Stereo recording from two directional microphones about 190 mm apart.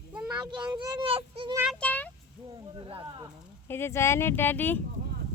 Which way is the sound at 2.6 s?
25° right (ahead or behind).